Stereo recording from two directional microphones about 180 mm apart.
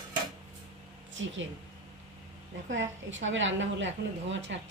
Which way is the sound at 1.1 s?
90° right.